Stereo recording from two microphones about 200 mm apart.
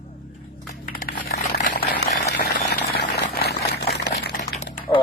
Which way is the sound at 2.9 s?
55° left (ahead or behind).